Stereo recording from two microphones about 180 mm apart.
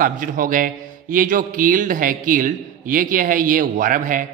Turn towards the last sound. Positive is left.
turn(degrees=-45)  # may be behind; listen again after turning